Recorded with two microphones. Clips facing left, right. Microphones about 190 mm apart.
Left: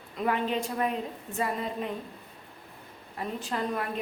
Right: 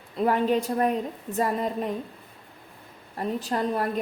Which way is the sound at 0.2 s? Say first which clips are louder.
Right 6 dB; 40° right (ahead or behind).